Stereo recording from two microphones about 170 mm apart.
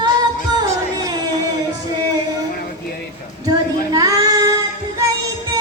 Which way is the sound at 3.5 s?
20° right (ahead or behind).